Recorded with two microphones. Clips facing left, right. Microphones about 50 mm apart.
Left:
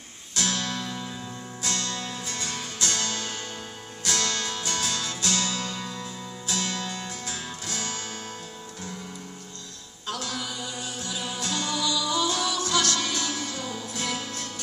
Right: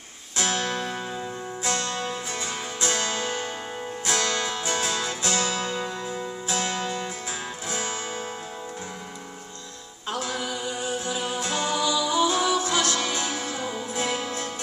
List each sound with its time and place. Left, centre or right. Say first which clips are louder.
0.4 s music: right 3 dB; right
10.0 s music: right 3 dB; right